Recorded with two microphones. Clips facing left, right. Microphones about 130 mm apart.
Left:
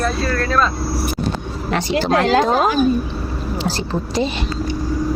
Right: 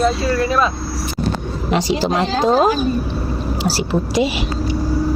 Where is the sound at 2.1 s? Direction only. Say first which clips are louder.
Left 4 dB; 90° left.